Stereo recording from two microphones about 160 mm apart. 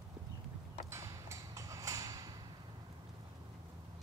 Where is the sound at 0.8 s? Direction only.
15° right (ahead or behind).